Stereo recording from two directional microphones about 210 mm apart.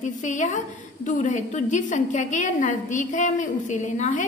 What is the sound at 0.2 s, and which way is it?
A woman's voice, 35° left (ahead or behind).